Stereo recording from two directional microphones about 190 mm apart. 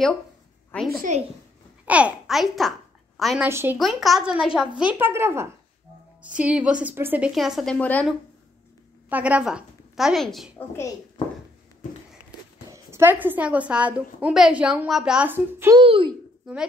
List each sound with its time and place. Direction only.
0.7 s a child's voice: 10° left (ahead or behind)
1.9 s a woman's voice: 5° right (ahead or behind)
3.4 s a woman's voice: 15° right (ahead or behind)
3.7 s a woman's voice: centre (ahead or behind)
9.1 s a woman's voice: 5° right (ahead or behind)
12.7 s a woman's voice: 10° right (ahead or behind)
15.8 s a child's voice: 25° right (ahead or behind)
16.5 s a woman's voice: centre (ahead or behind)